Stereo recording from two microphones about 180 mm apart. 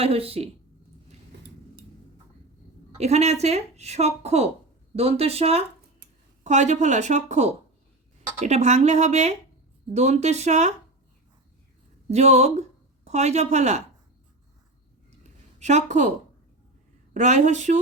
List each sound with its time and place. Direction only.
0.0 s a woman's voice: 35° right (ahead or behind)
3.0 s a woman's voice: 35° right (ahead or behind)
12.1 s a woman's voice: 40° right (ahead or behind)
15.5 s speech: 40° right (ahead or behind)
17.2 s a woman's voice: 40° right (ahead or behind)